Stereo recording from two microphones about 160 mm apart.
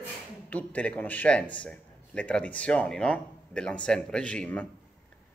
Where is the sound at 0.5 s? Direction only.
10° left (ahead or behind).